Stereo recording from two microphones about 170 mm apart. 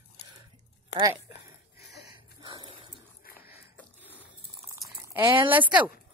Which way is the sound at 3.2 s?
60° left (ahead or behind).